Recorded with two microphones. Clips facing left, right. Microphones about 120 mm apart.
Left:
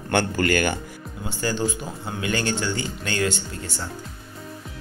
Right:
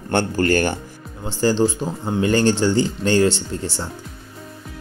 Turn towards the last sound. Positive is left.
turn(degrees=-35)  # may be behind; listen again after turning